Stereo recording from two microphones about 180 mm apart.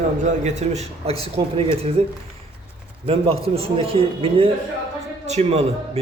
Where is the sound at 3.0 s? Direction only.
30° right (ahead or behind).